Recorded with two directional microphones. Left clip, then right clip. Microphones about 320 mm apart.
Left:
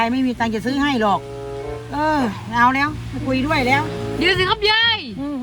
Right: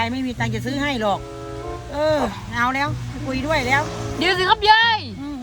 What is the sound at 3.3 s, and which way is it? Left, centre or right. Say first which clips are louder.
Speech: left 2 dB; centre.